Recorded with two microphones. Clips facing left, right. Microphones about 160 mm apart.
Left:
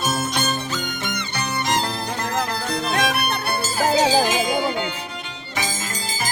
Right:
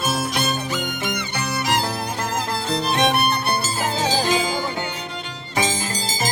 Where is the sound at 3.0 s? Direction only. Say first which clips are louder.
Right 3 dB; 25° right (ahead or behind).